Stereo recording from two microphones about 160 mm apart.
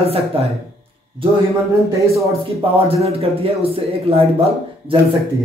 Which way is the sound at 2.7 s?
35° right (ahead or behind).